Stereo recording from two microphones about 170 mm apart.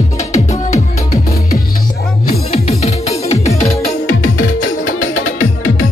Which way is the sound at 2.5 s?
40° left (ahead or behind).